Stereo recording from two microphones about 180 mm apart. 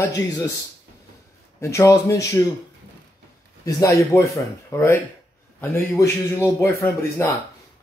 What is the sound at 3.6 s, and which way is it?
Speech, 15° left (ahead or behind).